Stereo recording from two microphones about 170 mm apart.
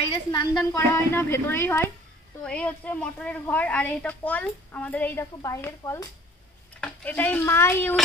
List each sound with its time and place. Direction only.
0.1 s a woman's voice: 25° left (ahead or behind)
0.6 s a woman's voice: 15° left (ahead or behind)